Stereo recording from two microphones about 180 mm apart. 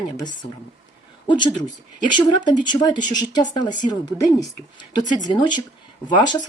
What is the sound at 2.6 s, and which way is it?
Speech, 25° left (ahead or behind).